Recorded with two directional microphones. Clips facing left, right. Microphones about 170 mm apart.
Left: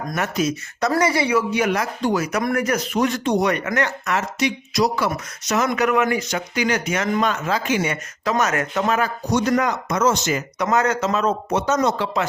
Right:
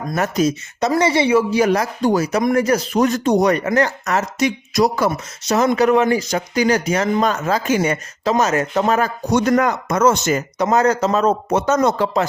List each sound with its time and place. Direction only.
0.1 s speech: 35° right (ahead or behind)
0.8 s speech: 25° right (ahead or behind); by 2.2 s 40° right (ahead or behind)
2.4 s speech: 20° right (ahead or behind)
2.6 s speech: 35° right (ahead or behind)
5.1 s speech: 30° right (ahead or behind)
8.2 s speech: 30° right (ahead or behind)
9.3 s speech: 55° right (ahead or behind)
10.6 s speech: 30° right (ahead or behind)
11.5 s speech: 50° right (ahead or behind)